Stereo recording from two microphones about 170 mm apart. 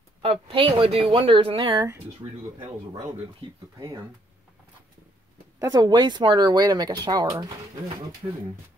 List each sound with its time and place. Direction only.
0.2 s speech: 35° right (ahead or behind)
3.4 s speech: 30° right (ahead or behind)
5.6 s speech: 20° right (ahead or behind)